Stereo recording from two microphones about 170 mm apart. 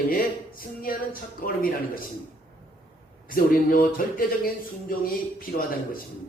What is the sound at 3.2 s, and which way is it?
Speech, 55° left (ahead or behind).